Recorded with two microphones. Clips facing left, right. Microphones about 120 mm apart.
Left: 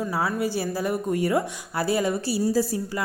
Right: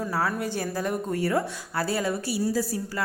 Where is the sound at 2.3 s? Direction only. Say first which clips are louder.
Left 3 dB; 30° left (ahead or behind).